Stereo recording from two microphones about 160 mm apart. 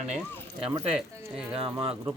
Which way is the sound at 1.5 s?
35° right (ahead or behind).